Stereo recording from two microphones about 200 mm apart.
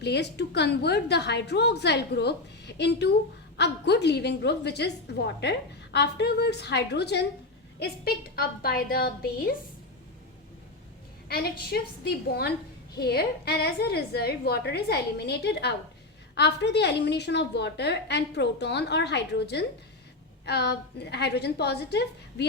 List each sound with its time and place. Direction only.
0.0 s a woman's voice: 55° left (ahead or behind)
11.3 s a woman's voice: 50° left (ahead or behind)